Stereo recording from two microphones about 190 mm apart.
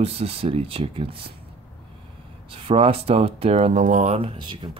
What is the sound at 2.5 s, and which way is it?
Speech, 30° right (ahead or behind).